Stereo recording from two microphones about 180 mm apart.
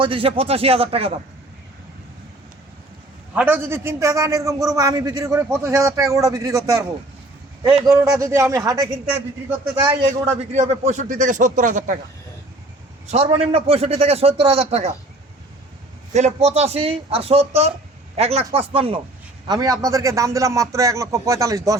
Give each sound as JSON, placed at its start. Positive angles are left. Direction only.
{"t": 0.0, "sound": "a man's voice", "side_deg": -30}
{"t": 3.3, "sound": "a man's voice", "side_deg": -10}
{"t": 10.5, "sound": "speech", "side_deg": -40}
{"t": 13.1, "sound": "a man's voice", "side_deg": -35}
{"t": 16.1, "sound": "a man's voice", "side_deg": -40}
{"t": 19.5, "sound": "a man's voice", "side_deg": -20}